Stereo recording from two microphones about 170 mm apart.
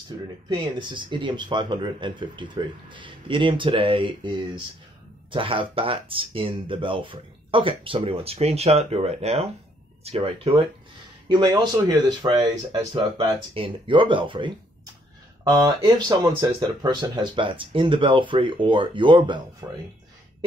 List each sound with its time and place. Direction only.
0.5 s speech: 25° right (ahead or behind)
5.3 s speech: 30° right (ahead or behind)
15.5 s speech: 20° right (ahead or behind)
19.6 s speech: 15° right (ahead or behind)